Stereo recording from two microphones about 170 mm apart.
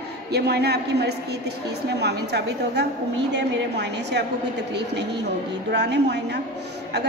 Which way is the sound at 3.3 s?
90° right.